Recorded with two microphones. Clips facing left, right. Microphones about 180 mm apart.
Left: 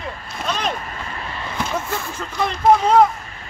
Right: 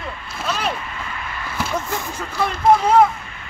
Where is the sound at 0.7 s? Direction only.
40° left (ahead or behind).